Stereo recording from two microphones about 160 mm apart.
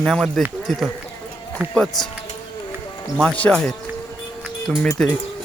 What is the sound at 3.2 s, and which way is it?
Speech, 5° left (ahead or behind).